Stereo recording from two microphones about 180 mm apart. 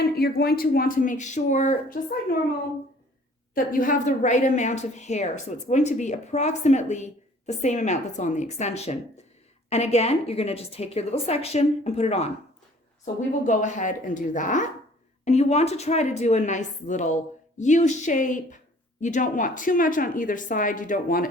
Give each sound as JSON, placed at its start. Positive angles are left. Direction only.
{"t": 0.0, "sound": "a woman's voice", "side_deg": 60}
{"t": 3.5, "sound": "a woman's voice", "side_deg": 50}
{"t": 13.4, "sound": "a woman's voice", "side_deg": 45}